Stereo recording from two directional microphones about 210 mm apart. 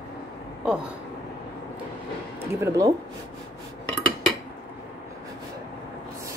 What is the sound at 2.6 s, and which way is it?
Speech, 15° right (ahead or behind).